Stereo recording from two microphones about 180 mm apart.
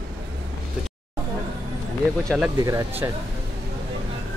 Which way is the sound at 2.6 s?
20° right (ahead or behind).